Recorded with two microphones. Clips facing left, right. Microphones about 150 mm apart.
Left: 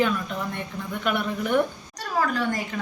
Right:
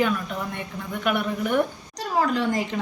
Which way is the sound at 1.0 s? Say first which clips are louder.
Right 2 dB; 5° right (ahead or behind).